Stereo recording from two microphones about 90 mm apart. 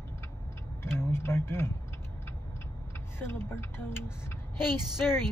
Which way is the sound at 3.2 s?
25° left (ahead or behind).